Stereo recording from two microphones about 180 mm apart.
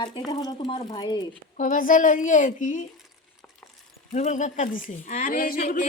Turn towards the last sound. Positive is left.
turn(degrees=55)  # may be behind; listen again after turning